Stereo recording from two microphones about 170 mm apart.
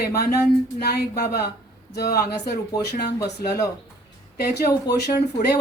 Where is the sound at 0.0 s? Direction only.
65° left (ahead or behind).